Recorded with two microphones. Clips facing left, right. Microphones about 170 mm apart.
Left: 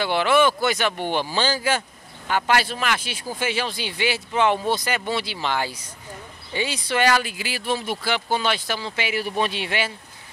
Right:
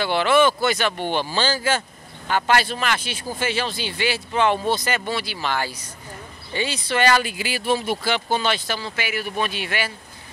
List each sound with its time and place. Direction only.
0.0 s speech: 15° left (ahead or behind); by 8.0 s 5° right (ahead or behind)
8.0 s speech: 10° left (ahead or behind); by 9.9 s 25° left (ahead or behind)